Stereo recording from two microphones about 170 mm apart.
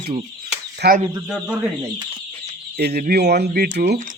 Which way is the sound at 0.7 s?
60° right (ahead or behind).